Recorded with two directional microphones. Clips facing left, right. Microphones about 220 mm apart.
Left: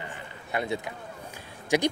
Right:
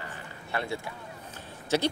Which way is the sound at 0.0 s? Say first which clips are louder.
Left 2 dB; 20° left (ahead or behind).